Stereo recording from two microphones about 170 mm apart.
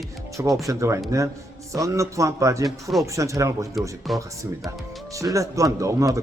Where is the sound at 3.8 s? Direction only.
Centre (ahead or behind).